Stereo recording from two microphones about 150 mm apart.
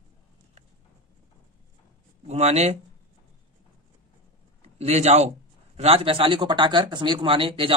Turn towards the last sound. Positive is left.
turn(degrees=-35)  # may be behind; listen again after turning